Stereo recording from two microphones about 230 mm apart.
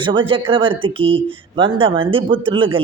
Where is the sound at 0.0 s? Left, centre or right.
Right.